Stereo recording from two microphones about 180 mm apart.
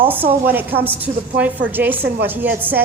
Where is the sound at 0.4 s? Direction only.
10° right (ahead or behind).